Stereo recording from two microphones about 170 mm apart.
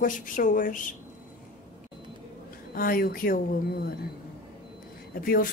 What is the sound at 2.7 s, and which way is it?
Speech, 60° left (ahead or behind).